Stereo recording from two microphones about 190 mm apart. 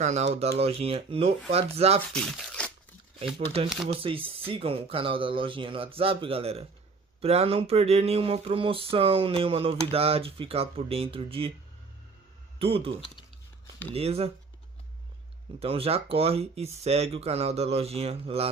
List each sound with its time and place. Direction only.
0.0 s speech: 35° right (ahead or behind)
2.1 s speech: centre (ahead or behind)
3.9 s speech: 30° right (ahead or behind)
12.5 s speech: 30° right (ahead or behind)
13.9 s speech: 30° right (ahead or behind)
15.6 s speech: 30° right (ahead or behind)